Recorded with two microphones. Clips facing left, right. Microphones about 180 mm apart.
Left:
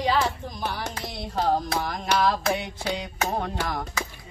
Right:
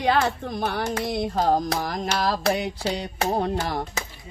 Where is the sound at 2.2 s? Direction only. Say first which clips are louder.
Even; 35° right (ahead or behind).